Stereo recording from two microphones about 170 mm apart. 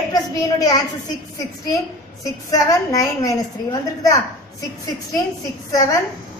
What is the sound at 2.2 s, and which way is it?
A woman's voice, 20° left (ahead or behind).